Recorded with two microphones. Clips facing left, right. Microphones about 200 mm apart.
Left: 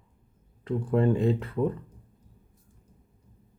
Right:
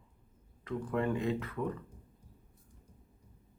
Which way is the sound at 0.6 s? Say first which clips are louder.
Left 8 dB; 30° left (ahead or behind).